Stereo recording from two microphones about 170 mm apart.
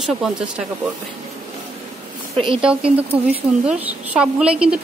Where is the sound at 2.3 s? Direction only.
30° right (ahead or behind).